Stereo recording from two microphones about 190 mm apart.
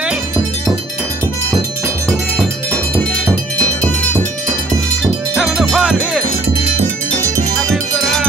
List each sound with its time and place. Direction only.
5.3 s music: centre (ahead or behind)